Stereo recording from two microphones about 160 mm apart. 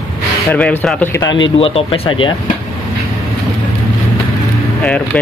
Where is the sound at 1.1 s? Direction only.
25° left (ahead or behind).